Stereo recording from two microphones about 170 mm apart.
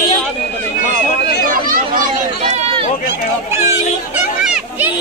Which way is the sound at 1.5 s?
55° right (ahead or behind).